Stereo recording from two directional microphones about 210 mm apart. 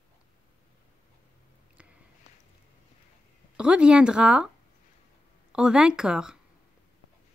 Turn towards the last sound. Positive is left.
turn(degrees=-5)  # may be behind; listen again after turning